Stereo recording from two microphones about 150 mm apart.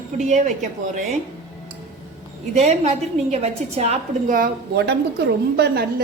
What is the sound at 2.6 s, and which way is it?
A woman's voice, 45° right (ahead or behind).